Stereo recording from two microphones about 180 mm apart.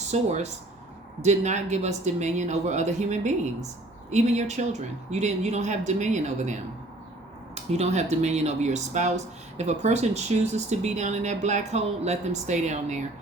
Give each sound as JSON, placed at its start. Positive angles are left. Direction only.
{"t": 0.1, "sound": "speech", "side_deg": -40}
{"t": 7.5, "sound": "speech", "side_deg": -35}